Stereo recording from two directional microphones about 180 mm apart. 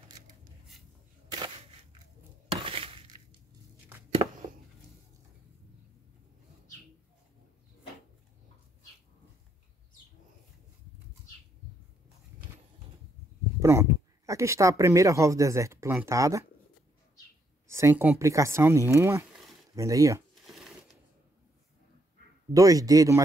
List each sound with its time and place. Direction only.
1.3 s single-lens reflex camera: 25° right (ahead or behind)
2.5 s glass: 30° right (ahead or behind)
13.6 s speech: 15° right (ahead or behind)
17.6 s speech: 15° right (ahead or behind)
22.5 s speech: 20° right (ahead or behind)